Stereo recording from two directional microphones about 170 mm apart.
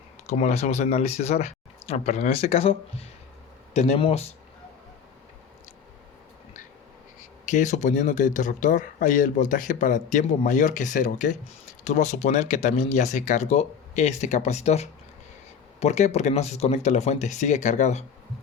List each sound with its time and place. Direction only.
0.3 s speech: 40° left (ahead or behind)
3.8 s speech: 35° left (ahead or behind)
7.4 s speech: 45° left (ahead or behind)